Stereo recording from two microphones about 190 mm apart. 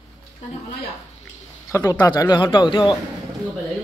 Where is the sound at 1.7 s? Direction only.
20° left (ahead or behind).